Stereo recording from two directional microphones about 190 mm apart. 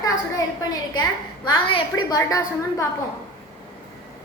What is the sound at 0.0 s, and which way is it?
A woman's voice, 20° left (ahead or behind).